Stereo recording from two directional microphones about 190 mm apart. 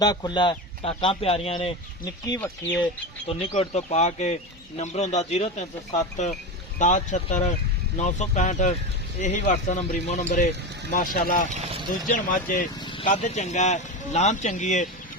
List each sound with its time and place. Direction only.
0.0 s speech: 20° left (ahead or behind)
2.7 s speech: 25° left (ahead or behind); by 11.4 s 45° left (ahead or behind)
11.5 s speech: 30° right (ahead or behind)
12.0 s speech: 45° left (ahead or behind)
12.8 s vehicle: 25° left (ahead or behind)
13.1 s speech: 35° left (ahead or behind)